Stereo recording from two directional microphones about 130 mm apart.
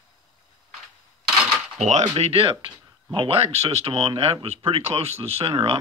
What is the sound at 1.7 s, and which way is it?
Speech, 60° right (ahead or behind).